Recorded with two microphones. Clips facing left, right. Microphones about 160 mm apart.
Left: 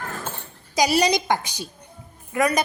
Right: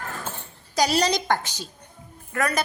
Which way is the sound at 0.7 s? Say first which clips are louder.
Left 2 dB; 10° left (ahead or behind).